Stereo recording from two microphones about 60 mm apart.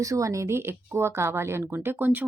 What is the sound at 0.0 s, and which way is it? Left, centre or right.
Speech, right.